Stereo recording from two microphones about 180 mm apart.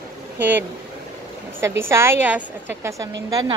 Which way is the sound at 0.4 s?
10° right (ahead or behind).